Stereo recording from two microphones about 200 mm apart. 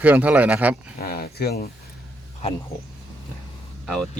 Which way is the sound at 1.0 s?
50° left (ahead or behind).